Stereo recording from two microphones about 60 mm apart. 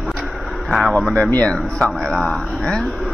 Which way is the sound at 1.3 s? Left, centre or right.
Centre.